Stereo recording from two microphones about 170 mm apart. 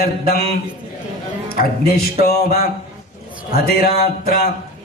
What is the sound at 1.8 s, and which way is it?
Speech, 65° left (ahead or behind).